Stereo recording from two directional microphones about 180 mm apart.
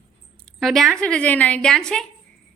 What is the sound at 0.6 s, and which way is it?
A woman's voice, centre (ahead or behind).